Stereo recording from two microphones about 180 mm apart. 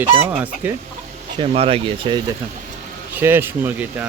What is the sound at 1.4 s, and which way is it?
Speech, 30° right (ahead or behind).